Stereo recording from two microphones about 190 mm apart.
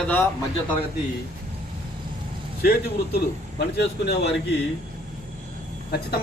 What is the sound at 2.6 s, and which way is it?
Speech, 55° left (ahead or behind).